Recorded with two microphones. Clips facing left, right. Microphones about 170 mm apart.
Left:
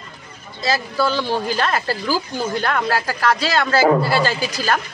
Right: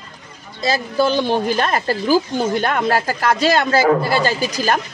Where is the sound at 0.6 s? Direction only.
20° right (ahead or behind).